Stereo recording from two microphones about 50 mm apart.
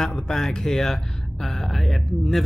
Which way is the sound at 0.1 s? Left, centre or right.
Centre.